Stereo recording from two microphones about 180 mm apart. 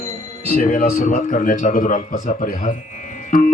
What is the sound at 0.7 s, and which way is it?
A man's voice, 45° left (ahead or behind).